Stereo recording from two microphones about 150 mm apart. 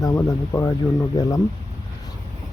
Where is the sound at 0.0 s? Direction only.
20° left (ahead or behind).